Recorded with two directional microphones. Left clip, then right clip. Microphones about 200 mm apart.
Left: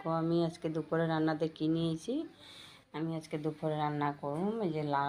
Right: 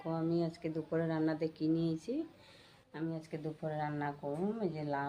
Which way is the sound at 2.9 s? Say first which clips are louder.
Left 3 dB; 20° left (ahead or behind).